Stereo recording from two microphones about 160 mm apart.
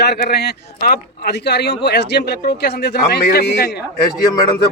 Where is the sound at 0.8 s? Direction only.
75° left (ahead or behind).